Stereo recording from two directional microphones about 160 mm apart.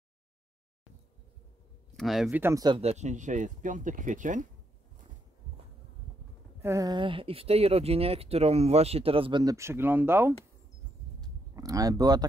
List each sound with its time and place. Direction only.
2.0 s speech: centre (ahead or behind)
2.4 s speech: 25° right (ahead or behind)
2.8 s speech: 45° right (ahead or behind)
6.6 s speech: 20° right (ahead or behind)
11.5 s speech: 20° right (ahead or behind)